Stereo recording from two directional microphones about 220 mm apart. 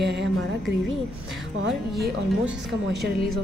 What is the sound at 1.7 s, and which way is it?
Speech, 45° right (ahead or behind).